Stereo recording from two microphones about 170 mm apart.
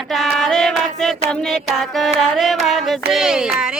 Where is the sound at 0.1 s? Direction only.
Centre (ahead or behind).